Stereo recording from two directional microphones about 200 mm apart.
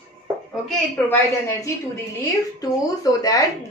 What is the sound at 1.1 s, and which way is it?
Speech, 15° left (ahead or behind).